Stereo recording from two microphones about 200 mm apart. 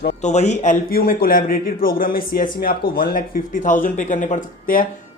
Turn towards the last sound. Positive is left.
turn(degrees=40)  # may be behind; listen again after turning